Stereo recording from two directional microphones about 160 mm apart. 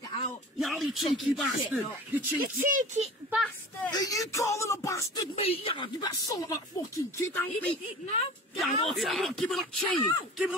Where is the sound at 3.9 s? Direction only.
20° left (ahead or behind).